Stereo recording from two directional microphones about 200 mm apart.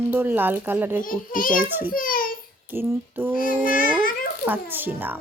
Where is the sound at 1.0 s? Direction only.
45° left (ahead or behind).